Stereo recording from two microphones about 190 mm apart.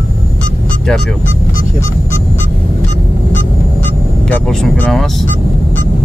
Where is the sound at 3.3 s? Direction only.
10° left (ahead or behind).